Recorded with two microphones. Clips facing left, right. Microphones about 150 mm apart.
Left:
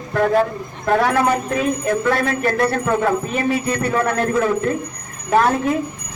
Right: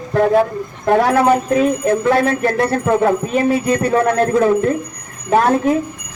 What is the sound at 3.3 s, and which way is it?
Speech, 35° right (ahead or behind).